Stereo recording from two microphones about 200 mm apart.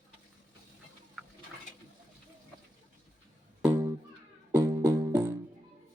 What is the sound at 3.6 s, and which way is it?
Music, 10° right (ahead or behind).